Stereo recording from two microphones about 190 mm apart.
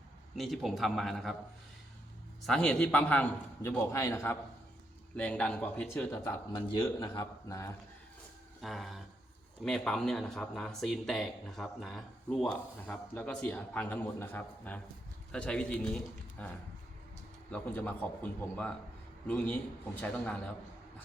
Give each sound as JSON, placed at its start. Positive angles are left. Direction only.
{"t": 0.3, "sound": "speech", "side_deg": 0}
{"t": 2.5, "sound": "a man's voice", "side_deg": 5}
{"t": 8.6, "sound": "a man's voice", "side_deg": 0}
{"t": 20.0, "sound": "a man's voice", "side_deg": 5}